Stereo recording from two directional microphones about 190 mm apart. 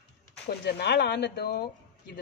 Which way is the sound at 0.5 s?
60° left (ahead or behind).